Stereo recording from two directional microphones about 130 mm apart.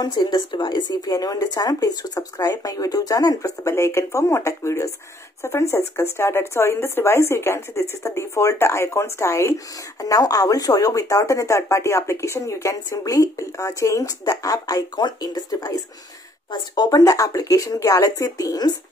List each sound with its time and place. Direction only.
0.0 s a woman's voice: 35° left (ahead or behind)